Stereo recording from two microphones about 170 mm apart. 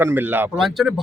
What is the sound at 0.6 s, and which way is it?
Speech, centre (ahead or behind).